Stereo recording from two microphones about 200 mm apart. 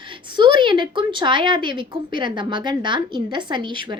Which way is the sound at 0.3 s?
25° right (ahead or behind).